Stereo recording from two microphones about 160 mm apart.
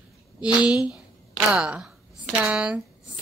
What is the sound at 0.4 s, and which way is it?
A woman's voice, 5° right (ahead or behind).